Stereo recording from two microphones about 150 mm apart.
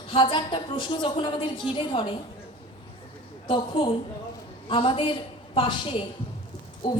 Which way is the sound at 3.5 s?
30° left (ahead or behind).